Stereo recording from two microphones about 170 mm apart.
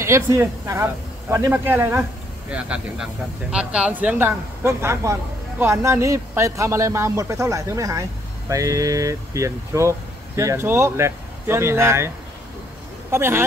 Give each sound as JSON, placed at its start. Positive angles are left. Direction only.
{"t": 0.0, "sound": "speech", "side_deg": -15}
{"t": 13.1, "sound": "speech", "side_deg": -15}